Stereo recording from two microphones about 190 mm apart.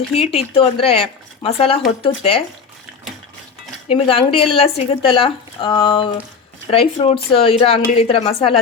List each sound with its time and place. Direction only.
0.2 s speech: 30° left (ahead or behind)
3.8 s a woman's voice: 30° left (ahead or behind)